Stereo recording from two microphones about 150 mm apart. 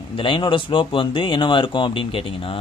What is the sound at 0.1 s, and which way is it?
Speech, 35° left (ahead or behind).